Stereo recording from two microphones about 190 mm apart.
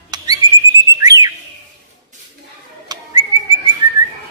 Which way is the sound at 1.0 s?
20° right (ahead or behind).